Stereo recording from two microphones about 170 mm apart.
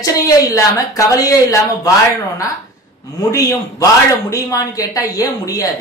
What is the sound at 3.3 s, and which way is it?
Speech, 20° left (ahead or behind).